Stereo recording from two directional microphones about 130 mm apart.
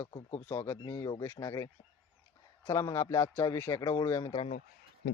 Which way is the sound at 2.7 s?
25° left (ahead or behind).